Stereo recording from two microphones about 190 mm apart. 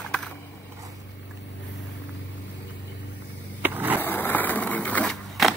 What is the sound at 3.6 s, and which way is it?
Skateboard, 10° right (ahead or behind).